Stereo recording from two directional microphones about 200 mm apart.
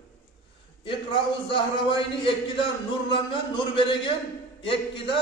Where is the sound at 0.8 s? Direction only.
25° left (ahead or behind).